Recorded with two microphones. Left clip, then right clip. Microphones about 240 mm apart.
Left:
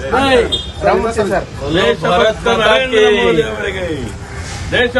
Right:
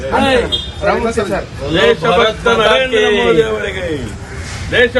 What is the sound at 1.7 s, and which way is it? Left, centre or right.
A man's voice, centre.